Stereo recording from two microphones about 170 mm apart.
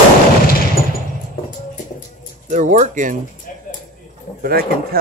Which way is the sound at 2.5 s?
45° right (ahead or behind).